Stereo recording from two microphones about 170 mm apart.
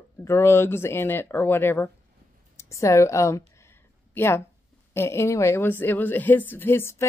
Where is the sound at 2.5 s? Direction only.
15° left (ahead or behind).